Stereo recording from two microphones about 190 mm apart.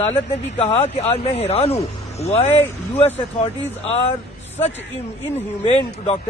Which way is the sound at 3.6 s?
30° left (ahead or behind).